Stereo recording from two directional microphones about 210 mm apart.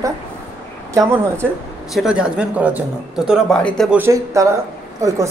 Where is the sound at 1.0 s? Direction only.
15° right (ahead or behind).